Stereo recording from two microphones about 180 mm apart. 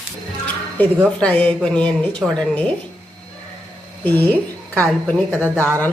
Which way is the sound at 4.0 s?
10° left (ahead or behind).